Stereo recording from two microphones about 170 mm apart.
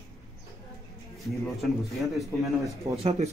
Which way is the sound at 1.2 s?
Centre (ahead or behind).